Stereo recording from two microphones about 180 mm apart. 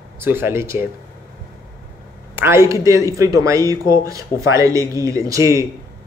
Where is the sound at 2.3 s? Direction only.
15° right (ahead or behind).